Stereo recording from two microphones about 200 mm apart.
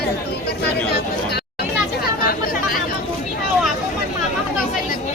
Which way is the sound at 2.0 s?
45° left (ahead or behind).